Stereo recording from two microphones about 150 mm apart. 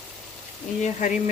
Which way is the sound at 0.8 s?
55° left (ahead or behind).